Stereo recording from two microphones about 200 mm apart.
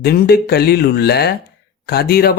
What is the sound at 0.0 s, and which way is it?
Speech, 50° left (ahead or behind).